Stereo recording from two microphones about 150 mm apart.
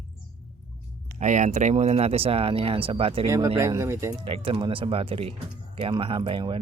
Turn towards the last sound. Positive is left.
turn(degrees=-35)  # may be behind; listen again after turning